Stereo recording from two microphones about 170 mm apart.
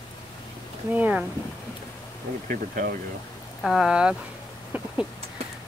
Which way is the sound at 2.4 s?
50° right (ahead or behind).